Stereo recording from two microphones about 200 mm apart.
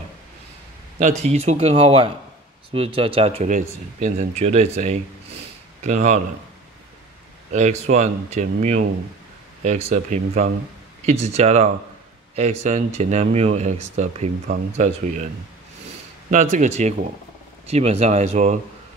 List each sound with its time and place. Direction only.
0.9 s speech: 35° right (ahead or behind)
7.5 s speech: 35° right (ahead or behind)
16.3 s speech: 35° right (ahead or behind)